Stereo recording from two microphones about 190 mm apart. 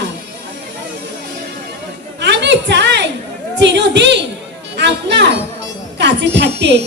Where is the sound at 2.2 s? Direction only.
65° right (ahead or behind).